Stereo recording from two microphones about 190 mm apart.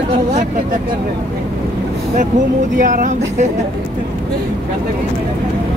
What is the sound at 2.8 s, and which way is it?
Speech, 45° right (ahead or behind).